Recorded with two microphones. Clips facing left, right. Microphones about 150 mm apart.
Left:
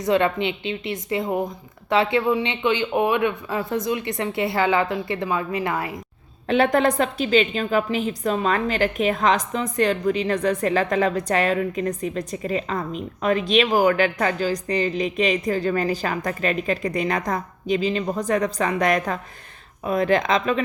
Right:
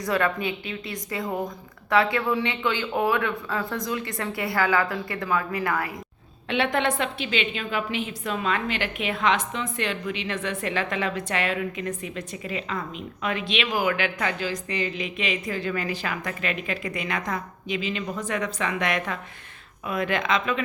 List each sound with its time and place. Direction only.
0.0 s a woman's voice: 25° left (ahead or behind)
6.5 s a woman's voice: 40° left (ahead or behind)